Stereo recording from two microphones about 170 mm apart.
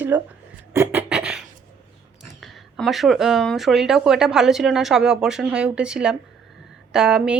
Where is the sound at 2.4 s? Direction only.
Centre (ahead or behind).